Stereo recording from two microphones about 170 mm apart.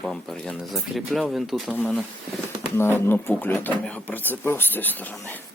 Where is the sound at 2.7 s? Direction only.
15° left (ahead or behind).